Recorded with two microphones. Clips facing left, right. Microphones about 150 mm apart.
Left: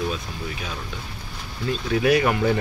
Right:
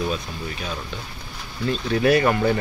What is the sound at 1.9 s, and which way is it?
Speech, 10° left (ahead or behind).